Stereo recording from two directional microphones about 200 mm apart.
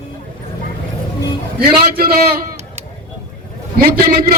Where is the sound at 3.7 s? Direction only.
50° right (ahead or behind).